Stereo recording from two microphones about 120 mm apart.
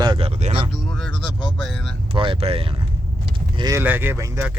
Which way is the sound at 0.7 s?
5° left (ahead or behind).